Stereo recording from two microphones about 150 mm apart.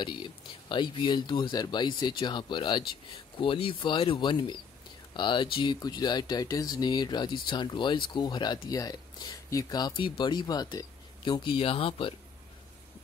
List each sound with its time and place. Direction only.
0.0 s speech: 30° left (ahead or behind)